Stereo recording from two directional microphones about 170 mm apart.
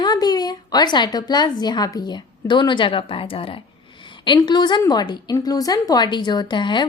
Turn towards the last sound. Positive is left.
turn(degrees=25)  # may be behind; listen again after turning